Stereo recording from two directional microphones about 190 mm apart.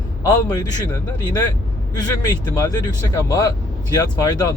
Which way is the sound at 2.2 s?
20° left (ahead or behind).